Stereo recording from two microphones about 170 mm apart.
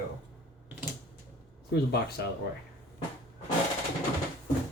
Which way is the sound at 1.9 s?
70° left (ahead or behind).